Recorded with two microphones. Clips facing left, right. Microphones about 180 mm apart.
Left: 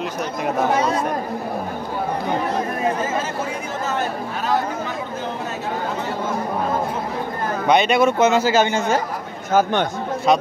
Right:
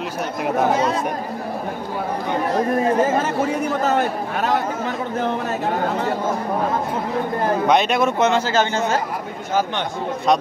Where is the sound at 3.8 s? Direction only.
65° right (ahead or behind).